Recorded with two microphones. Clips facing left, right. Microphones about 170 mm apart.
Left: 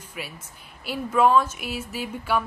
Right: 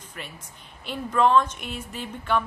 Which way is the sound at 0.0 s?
10° left (ahead or behind).